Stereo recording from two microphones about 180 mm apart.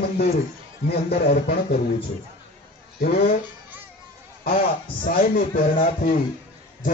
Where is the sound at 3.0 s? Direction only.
55° left (ahead or behind).